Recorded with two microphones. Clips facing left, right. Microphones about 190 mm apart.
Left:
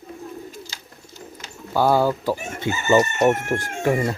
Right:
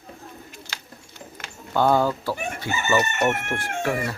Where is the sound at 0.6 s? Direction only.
60° right (ahead or behind).